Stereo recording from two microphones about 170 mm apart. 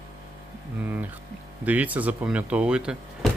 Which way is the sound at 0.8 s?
10° right (ahead or behind).